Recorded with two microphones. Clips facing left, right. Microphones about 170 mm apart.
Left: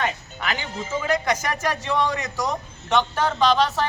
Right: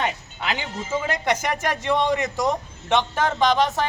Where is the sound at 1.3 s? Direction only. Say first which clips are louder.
Right 1 dB; 25° right (ahead or behind).